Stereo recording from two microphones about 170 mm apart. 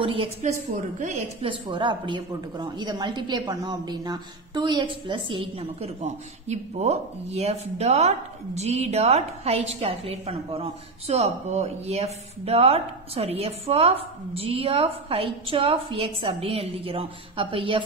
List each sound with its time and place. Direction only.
0.0 s a woman's voice: 35° right (ahead or behind)
1.4 s a woman's voice: 30° right (ahead or behind)